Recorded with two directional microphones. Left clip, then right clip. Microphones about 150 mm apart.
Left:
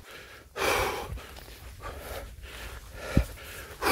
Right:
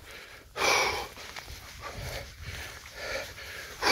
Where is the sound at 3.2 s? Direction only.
45° left (ahead or behind).